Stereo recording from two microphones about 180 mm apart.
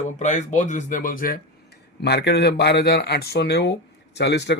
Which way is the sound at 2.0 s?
65° left (ahead or behind).